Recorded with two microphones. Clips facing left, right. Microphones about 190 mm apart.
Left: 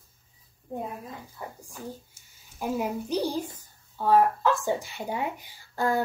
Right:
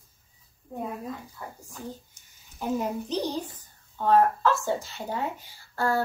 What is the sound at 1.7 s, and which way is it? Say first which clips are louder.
A child's voice: even; 10° left (ahead or behind).